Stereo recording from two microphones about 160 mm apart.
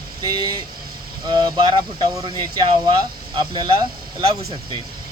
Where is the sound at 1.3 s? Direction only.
25° right (ahead or behind).